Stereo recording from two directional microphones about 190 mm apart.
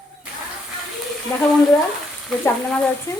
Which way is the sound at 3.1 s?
20° left (ahead or behind).